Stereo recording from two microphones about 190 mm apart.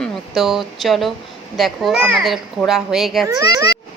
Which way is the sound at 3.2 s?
15° right (ahead or behind).